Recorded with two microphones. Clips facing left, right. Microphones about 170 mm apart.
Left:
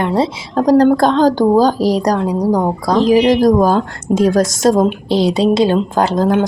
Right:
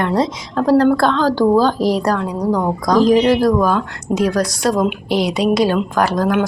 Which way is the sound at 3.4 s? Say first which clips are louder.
Left 4 dB; 40° left (ahead or behind).